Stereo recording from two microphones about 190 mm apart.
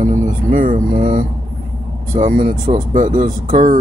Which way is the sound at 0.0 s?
45° right (ahead or behind).